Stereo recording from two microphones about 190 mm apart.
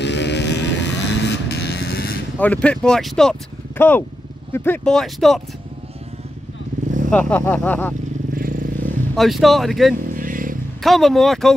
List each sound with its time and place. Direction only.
0.0 s vehicle: 65° left (ahead or behind)
2.3 s speech: 5° left (ahead or behind)
7.1 s speech: 10° left (ahead or behind)
8.4 s vehicle: 45° right (ahead or behind)
9.1 s speech: centre (ahead or behind)
10.0 s vehicle: 45° right (ahead or behind)
10.8 s speech: centre (ahead or behind)